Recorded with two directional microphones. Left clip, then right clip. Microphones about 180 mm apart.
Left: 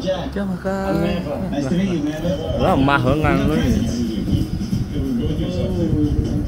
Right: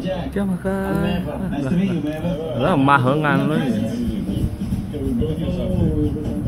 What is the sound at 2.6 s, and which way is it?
Speech, 20° right (ahead or behind).